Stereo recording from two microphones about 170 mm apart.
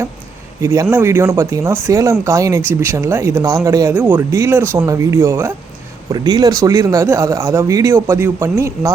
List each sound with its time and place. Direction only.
0.6 s speech: 15° right (ahead or behind)